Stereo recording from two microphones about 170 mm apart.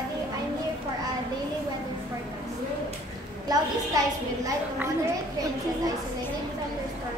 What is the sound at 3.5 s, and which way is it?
A woman's voice, 20° right (ahead or behind).